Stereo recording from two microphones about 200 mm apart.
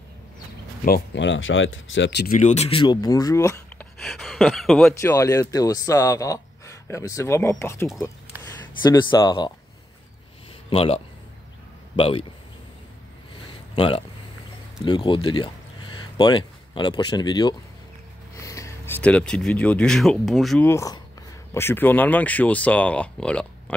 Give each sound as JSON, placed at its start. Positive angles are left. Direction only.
{"t": 0.8, "sound": "speech", "side_deg": 55}
{"t": 2.3, "sound": "speech", "side_deg": 35}
{"t": 4.0, "sound": "speech", "side_deg": 0}
{"t": 5.0, "sound": "speech", "side_deg": 15}
{"t": 10.7, "sound": "speech", "side_deg": 30}
{"t": 12.0, "sound": "speech", "side_deg": 25}
{"t": 13.5, "sound": "a sound", "side_deg": 25}
{"t": 14.9, "sound": "speech", "side_deg": 25}
{"t": 20.6, "sound": "speech", "side_deg": 15}